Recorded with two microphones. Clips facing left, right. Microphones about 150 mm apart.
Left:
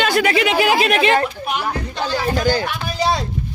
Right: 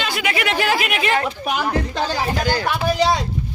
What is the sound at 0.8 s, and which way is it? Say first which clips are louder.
Speech: left 6 dB; 40° left (ahead or behind).